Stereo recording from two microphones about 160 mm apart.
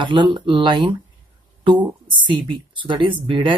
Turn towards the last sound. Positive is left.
turn(degrees=-30)  # may be behind; listen again after turning